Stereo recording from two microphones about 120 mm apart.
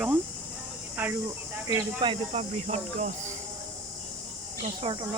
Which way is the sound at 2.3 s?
65° right (ahead or behind).